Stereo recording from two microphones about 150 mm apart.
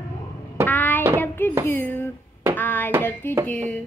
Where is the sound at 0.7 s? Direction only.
10° left (ahead or behind).